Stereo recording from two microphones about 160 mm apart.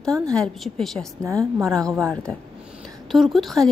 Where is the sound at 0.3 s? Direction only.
5° left (ahead or behind).